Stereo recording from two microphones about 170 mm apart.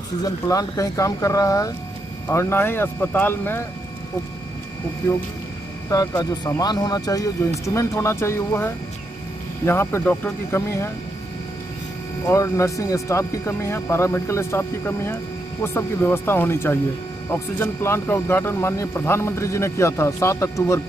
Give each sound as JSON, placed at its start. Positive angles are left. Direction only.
{"t": 0.2, "sound": "speech", "side_deg": 20}
{"t": 5.9, "sound": "speech", "side_deg": 20}
{"t": 12.3, "sound": "speech", "side_deg": 15}